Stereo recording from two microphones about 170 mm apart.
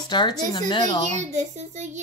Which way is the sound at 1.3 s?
45° right (ahead or behind).